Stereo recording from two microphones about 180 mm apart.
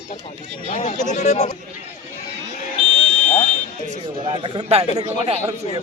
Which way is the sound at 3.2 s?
40° left (ahead or behind).